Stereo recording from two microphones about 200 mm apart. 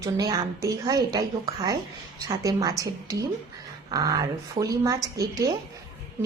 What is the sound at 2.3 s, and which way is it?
Speech, 15° right (ahead or behind).